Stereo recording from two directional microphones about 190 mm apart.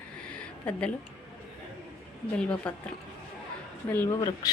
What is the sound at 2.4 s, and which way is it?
Speech, 5° left (ahead or behind).